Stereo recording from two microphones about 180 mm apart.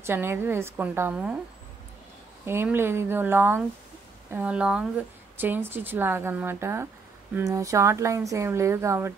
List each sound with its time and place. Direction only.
0.0 s speech: 15° right (ahead or behind)
2.4 s speech: 15° right (ahead or behind)